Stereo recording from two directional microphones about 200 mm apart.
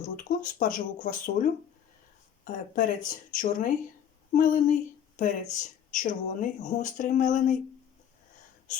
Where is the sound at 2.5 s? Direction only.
45° left (ahead or behind).